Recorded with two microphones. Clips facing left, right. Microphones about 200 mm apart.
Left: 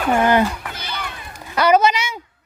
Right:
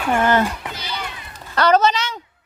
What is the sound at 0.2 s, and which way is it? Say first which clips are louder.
Speech: left 1 dB; 15° left (ahead or behind).